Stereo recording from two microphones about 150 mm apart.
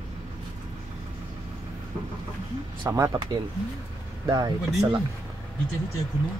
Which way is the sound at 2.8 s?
20° right (ahead or behind).